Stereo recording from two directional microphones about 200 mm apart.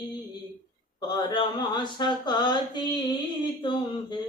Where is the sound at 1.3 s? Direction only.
20° left (ahead or behind).